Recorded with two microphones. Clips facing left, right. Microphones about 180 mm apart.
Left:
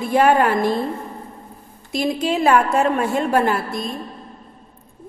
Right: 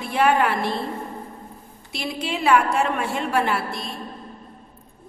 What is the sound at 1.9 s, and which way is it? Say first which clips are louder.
A woman's voice: left 8 dB; 45° left (ahead or behind).